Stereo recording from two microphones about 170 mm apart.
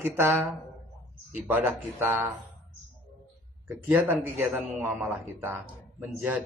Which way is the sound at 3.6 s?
10° right (ahead or behind).